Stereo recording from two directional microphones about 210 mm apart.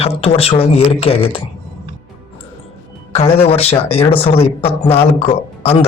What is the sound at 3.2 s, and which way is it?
Speech, 30° left (ahead or behind).